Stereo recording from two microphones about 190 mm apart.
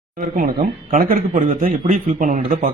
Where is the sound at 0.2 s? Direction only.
45° right (ahead or behind).